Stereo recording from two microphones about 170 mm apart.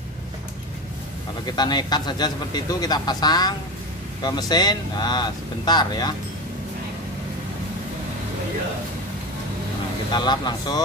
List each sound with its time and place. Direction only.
1.4 s speech: 25° left (ahead or behind)
10.1 s speech: 25° left (ahead or behind)